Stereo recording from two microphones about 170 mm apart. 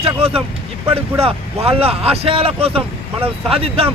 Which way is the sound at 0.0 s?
35° right (ahead or behind).